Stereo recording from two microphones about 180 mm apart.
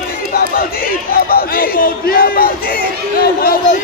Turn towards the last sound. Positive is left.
turn(degrees=55)  # may be behind; listen again after turning